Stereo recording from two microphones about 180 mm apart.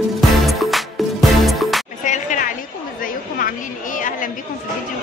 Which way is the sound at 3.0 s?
50° left (ahead or behind).